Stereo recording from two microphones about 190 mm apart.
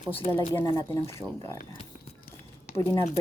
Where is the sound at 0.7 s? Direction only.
15° left (ahead or behind).